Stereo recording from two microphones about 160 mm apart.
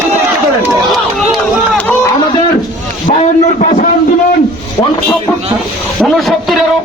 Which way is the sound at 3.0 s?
45° left (ahead or behind).